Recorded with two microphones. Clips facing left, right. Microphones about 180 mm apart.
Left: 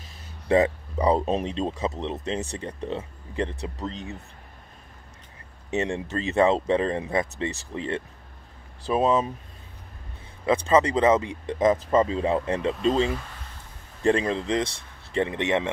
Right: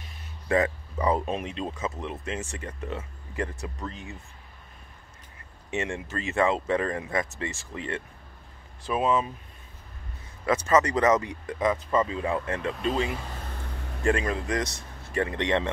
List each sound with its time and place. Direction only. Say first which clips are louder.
0.5 s speech: left 4 dB; 25° left (ahead or behind)
5.7 s speech: left 4 dB; 35° left (ahead or behind)
10.4 s speech: left 2 dB; 30° left (ahead or behind)
13.7 s a sound: right 9 dB; 70° right (ahead or behind)
14.0 s speech: left 3 dB; 30° left (ahead or behind)